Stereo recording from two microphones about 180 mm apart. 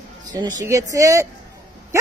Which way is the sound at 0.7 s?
15° right (ahead or behind).